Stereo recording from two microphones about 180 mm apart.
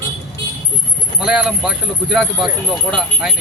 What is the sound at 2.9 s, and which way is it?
Speech, centre (ahead or behind).